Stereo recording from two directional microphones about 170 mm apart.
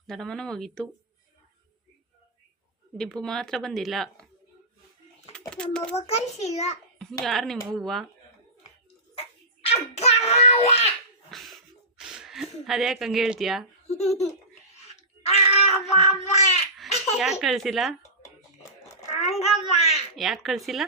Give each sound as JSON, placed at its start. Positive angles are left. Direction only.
{"t": 0.1, "sound": "speech", "side_deg": 5}
{"t": 3.0, "sound": "speech", "side_deg": 5}
{"t": 5.6, "sound": "speech", "side_deg": 5}
{"t": 5.9, "sound": "a child's voice", "side_deg": 40}
{"t": 7.0, "sound": "speech", "side_deg": 0}
{"t": 9.6, "sound": "a sound", "side_deg": 40}
{"t": 11.3, "sound": "a sound", "side_deg": 0}
{"t": 13.8, "sound": "a child's voice", "side_deg": 40}
{"t": 14.8, "sound": "babbling", "side_deg": 40}
{"t": 17.4, "sound": "speech", "side_deg": 0}
{"t": 19.0, "sound": "a sound", "side_deg": 40}
{"t": 19.7, "sound": "speech", "side_deg": 40}
{"t": 20.1, "sound": "speech", "side_deg": 0}